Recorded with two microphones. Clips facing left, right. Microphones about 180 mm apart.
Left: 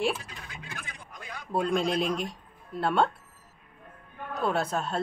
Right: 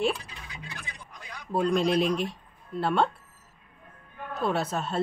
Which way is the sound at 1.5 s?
Centre (ahead or behind).